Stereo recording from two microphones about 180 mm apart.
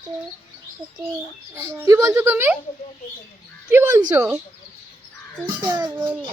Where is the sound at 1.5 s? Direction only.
15° right (ahead or behind).